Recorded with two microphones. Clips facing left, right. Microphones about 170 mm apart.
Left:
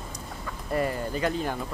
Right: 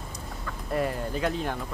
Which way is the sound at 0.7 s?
Centre (ahead or behind).